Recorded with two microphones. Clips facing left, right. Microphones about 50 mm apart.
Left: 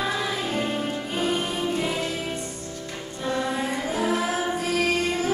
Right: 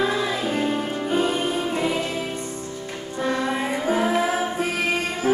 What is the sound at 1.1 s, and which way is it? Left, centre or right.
Music, right.